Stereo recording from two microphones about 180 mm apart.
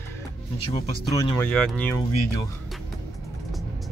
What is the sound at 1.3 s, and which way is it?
Speech, 5° left (ahead or behind).